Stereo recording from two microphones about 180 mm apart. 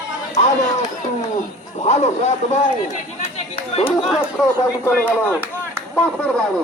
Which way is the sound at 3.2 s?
35° left (ahead or behind).